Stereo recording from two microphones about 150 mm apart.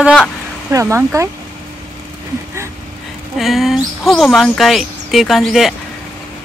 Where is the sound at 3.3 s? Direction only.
Centre (ahead or behind).